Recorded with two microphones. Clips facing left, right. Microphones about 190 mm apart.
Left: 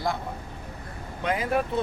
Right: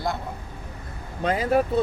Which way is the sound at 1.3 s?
35° right (ahead or behind).